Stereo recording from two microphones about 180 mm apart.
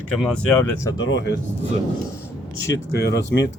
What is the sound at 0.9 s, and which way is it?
Speech, 90° left.